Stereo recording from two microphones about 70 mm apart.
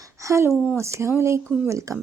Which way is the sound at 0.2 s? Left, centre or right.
Right.